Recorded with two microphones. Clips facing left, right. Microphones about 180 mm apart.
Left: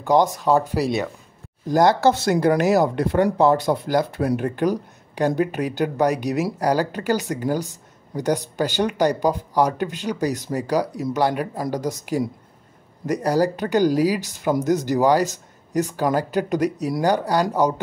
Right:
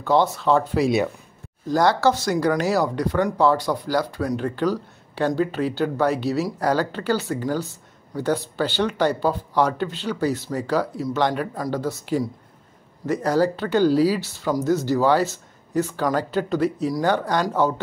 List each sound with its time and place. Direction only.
0.0 s speech: 15° left (ahead or behind)
13.1 s speech: 10° left (ahead or behind)